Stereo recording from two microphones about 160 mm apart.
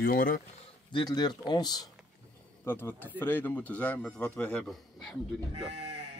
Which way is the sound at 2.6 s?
15° left (ahead or behind).